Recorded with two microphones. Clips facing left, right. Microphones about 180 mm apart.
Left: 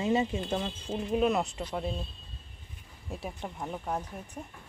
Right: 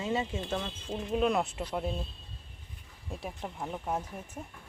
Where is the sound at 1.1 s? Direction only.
Centre (ahead or behind).